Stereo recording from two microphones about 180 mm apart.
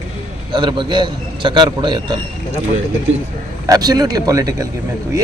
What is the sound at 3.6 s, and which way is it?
A man's voice, 20° right (ahead or behind).